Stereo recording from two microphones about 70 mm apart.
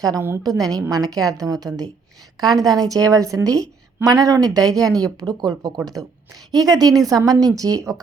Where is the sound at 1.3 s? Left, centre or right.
Right.